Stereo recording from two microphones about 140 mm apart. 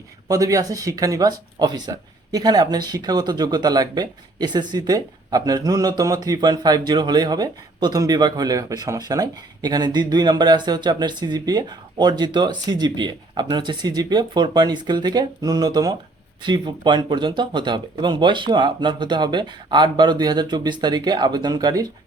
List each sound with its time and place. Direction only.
0.3 s speech: 25° right (ahead or behind)